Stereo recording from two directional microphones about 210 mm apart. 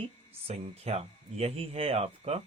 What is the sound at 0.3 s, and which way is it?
Speech, 30° right (ahead or behind).